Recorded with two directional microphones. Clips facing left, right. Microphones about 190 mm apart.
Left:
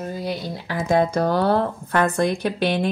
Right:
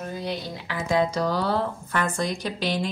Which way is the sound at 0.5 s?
45° left (ahead or behind).